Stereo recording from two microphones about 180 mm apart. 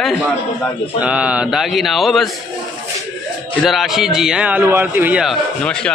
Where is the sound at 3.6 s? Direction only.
Centre (ahead or behind).